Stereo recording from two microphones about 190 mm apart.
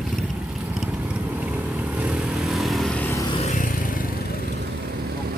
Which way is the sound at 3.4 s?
40° left (ahead or behind).